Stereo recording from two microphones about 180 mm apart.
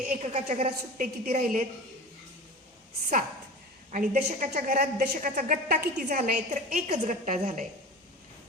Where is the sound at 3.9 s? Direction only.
45° right (ahead or behind).